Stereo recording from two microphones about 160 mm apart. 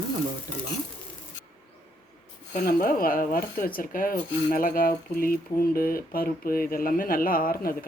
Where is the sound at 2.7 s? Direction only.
60° left (ahead or behind).